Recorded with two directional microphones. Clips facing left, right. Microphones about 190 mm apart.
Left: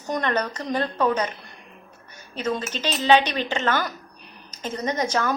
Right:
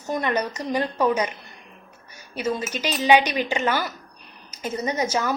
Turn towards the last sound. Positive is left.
turn(degrees=-10)  # may be behind; listen again after turning